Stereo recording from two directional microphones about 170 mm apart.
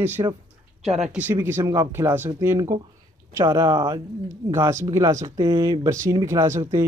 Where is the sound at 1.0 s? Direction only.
10° right (ahead or behind).